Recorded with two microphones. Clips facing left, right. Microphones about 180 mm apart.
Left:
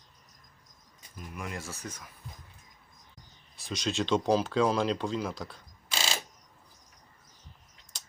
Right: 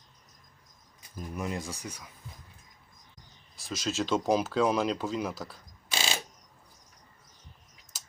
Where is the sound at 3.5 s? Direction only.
Centre (ahead or behind).